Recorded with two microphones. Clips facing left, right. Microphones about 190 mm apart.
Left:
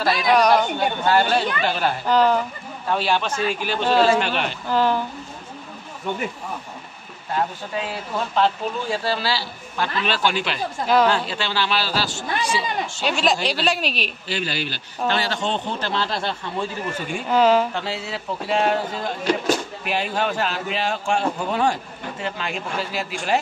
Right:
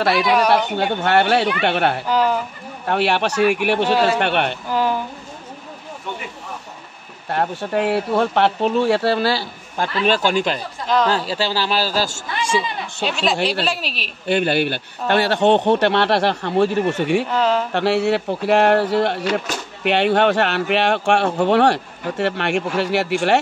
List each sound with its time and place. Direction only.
0.0 s speech: 65° right (ahead or behind)
0.3 s a woman's voice: 5° right (ahead or behind)
0.7 s speech: 70° right (ahead or behind)
2.0 s speech: 10° right (ahead or behind)
2.9 s speech: 70° right (ahead or behind)
4.6 s speech: 10° right (ahead or behind)
7.2 s a man's voice: 65° right (ahead or behind); by 12.6 s 45° right (ahead or behind)
13.0 s a woman's voice: centre (ahead or behind)
13.4 s speech: 60° right (ahead or behind)
13.7 s a woman's voice: centre (ahead or behind)
14.2 s speech: 55° right (ahead or behind)
17.3 s speech: 5° left (ahead or behind)
17.7 s speech: 70° right (ahead or behind)